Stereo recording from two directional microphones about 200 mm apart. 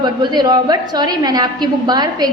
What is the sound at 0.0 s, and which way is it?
A woman's voice, 20° right (ahead or behind).